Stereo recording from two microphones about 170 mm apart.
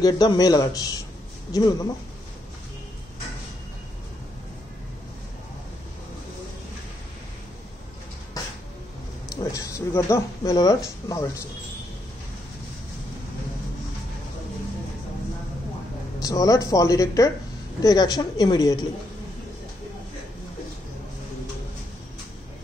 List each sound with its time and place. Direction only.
0.0 s speech: 25° left (ahead or behind)
9.3 s speech: 20° left (ahead or behind)
16.2 s speech: 20° left (ahead or behind)